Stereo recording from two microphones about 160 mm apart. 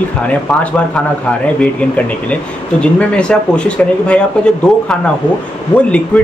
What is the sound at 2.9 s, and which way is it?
A man's voice, 5° left (ahead or behind).